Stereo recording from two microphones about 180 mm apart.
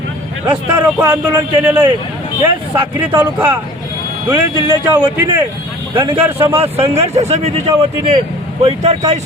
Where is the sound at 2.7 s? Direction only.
10° right (ahead or behind).